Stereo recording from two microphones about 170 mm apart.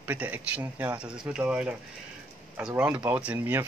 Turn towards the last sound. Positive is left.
turn(degrees=-10)  # may be behind; listen again after turning